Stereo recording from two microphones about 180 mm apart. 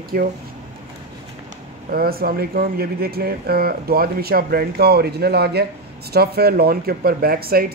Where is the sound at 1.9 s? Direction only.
55° right (ahead or behind).